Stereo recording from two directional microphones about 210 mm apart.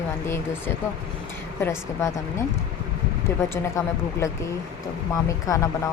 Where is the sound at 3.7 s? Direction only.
15° left (ahead or behind).